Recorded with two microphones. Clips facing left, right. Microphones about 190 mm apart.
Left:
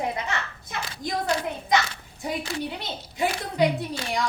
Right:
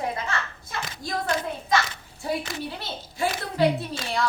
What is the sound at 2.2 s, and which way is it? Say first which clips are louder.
A woman's voice: even; 20° left (ahead or behind).